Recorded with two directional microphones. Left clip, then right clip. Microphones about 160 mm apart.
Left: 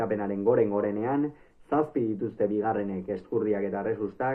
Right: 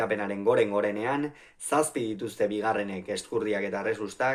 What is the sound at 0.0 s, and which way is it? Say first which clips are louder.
Speech: even; 20° right (ahead or behind).